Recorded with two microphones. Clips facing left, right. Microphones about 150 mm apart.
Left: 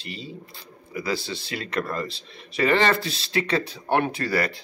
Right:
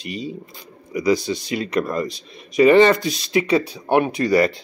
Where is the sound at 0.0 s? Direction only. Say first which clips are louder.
Right 8 dB; 15° right (ahead or behind).